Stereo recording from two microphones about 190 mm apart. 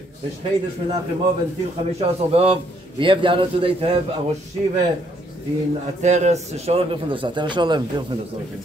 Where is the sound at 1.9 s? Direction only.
30° right (ahead or behind).